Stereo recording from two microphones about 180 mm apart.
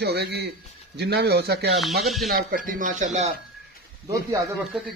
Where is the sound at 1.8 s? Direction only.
Centre (ahead or behind).